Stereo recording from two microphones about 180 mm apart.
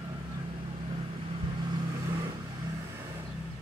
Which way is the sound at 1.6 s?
20° right (ahead or behind).